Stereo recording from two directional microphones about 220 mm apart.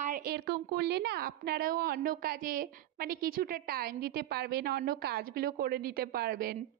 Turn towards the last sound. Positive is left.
turn(degrees=-45)  # may be behind; listen again after turning